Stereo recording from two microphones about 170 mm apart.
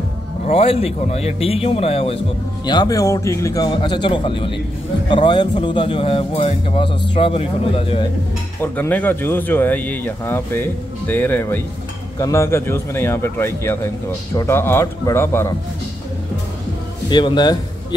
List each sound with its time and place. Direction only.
0.5 s a man's voice: 35° left (ahead or behind)
8.5 s speech: 10° left (ahead or behind)
17.1 s speech: 25° left (ahead or behind)